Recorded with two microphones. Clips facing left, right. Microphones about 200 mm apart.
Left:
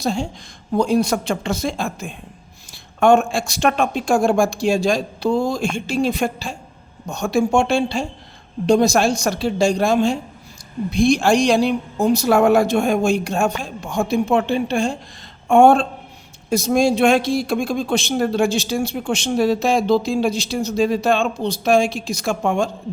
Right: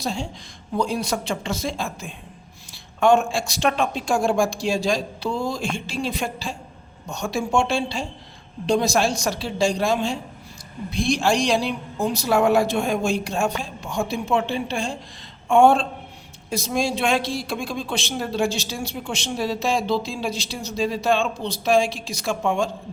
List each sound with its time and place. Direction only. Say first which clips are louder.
0.0 s a woman's voice: left 6 dB; 45° left (ahead or behind)